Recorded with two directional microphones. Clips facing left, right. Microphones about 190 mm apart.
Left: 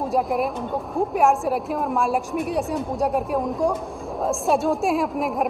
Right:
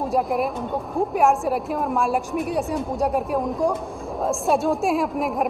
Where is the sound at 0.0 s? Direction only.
Centre (ahead or behind).